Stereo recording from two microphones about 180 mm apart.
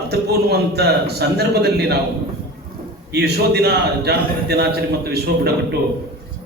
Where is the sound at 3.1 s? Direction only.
65° right (ahead or behind).